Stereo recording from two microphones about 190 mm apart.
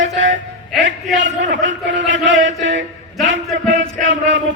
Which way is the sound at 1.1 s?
75° right (ahead or behind).